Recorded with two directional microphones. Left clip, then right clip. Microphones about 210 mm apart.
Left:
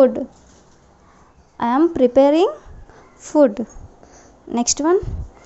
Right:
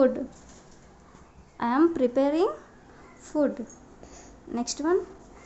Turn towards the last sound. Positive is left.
turn(degrees=35)  # may be behind; listen again after turning